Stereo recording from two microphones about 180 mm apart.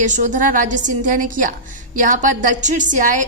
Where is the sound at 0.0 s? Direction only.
45° right (ahead or behind).